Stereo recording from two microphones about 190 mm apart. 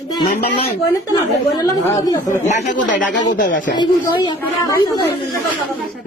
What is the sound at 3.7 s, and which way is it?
Speech, 25° left (ahead or behind).